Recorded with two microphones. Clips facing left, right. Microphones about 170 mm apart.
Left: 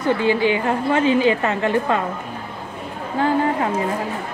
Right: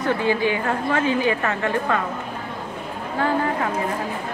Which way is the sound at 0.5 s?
20° left (ahead or behind).